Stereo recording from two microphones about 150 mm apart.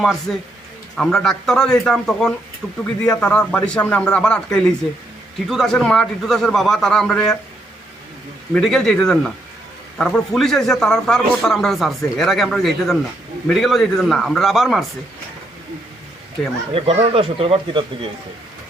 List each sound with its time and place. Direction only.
0.0 s speech: centre (ahead or behind)
8.5 s speech: centre (ahead or behind)
16.7 s speech: 40° right (ahead or behind)